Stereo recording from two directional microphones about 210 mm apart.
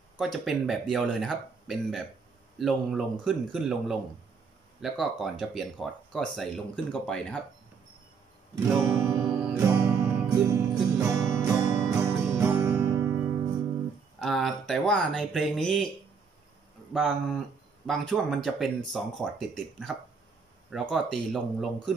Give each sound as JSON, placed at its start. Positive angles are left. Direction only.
{"t": 0.2, "sound": "speech", "side_deg": 0}
{"t": 8.6, "sound": "music", "side_deg": -10}
{"t": 14.2, "sound": "speech", "side_deg": 0}
{"t": 16.9, "sound": "speech", "side_deg": 0}